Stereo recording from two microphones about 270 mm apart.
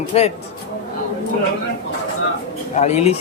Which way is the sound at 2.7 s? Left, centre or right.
Left.